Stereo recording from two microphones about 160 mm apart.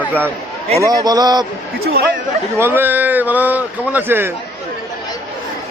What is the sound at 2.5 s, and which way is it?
A man's voice, 15° right (ahead or behind).